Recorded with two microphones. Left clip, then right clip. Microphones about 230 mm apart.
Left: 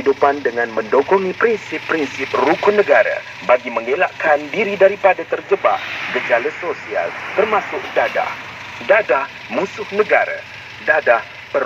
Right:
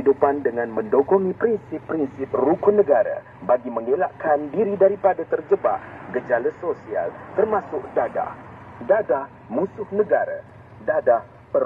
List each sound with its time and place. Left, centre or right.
0.0 s speech: centre
2.3 s speech: centre
3.5 s speech: left
8.8 s speech: left
9.9 s speech: centre
10.9 s speech: centre